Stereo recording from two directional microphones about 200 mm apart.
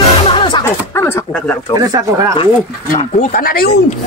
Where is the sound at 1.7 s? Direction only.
20° right (ahead or behind).